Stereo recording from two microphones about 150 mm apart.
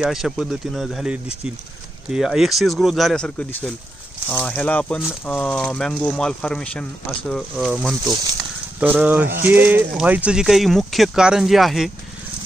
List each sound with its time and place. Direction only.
0.0 s speech: 5° right (ahead or behind)
8.0 s speech: 25° right (ahead or behind)
8.7 s speech: 10° right (ahead or behind)